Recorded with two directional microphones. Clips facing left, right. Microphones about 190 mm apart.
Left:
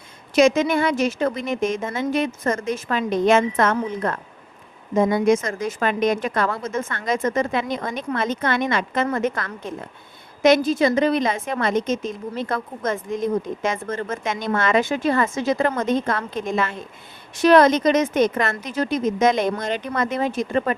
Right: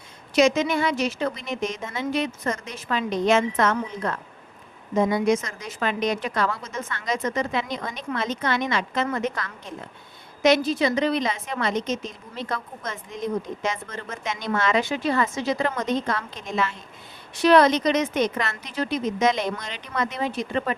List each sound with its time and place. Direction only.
0.3 s a woman's voice: 50° left (ahead or behind)